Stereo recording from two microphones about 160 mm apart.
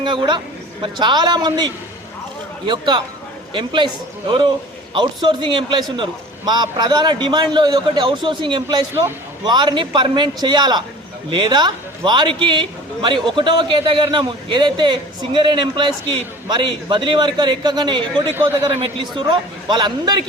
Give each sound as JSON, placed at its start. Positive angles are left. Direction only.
{"t": 0.0, "sound": "a woman's voice", "side_deg": -30}
{"t": 18.3, "sound": "a man's voice", "side_deg": -15}
{"t": 18.8, "sound": "a man's voice", "side_deg": -30}